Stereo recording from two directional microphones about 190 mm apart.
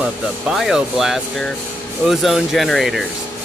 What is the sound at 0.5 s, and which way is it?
Speech, centre (ahead or behind).